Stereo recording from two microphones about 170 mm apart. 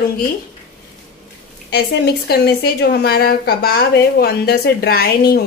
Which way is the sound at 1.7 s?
75° left (ahead or behind).